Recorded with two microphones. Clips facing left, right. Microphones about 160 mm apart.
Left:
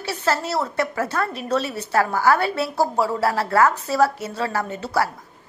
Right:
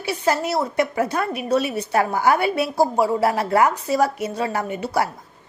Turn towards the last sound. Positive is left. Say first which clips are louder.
# right 1 dB
turn(degrees=-15)  # may be behind; listen again after turning